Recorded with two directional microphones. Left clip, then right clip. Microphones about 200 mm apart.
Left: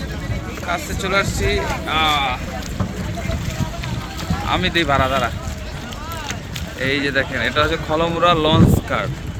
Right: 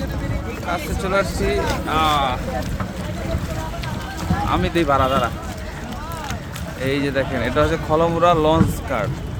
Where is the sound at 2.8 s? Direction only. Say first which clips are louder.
Left 1 dB; 50° left (ahead or behind).